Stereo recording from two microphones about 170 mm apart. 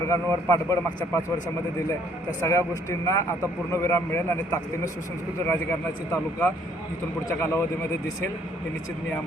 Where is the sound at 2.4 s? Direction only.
20° left (ahead or behind).